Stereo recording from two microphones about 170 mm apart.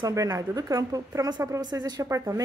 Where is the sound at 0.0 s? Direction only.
20° right (ahead or behind).